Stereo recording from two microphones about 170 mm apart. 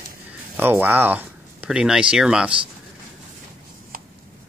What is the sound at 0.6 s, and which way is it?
Speech, 10° right (ahead or behind).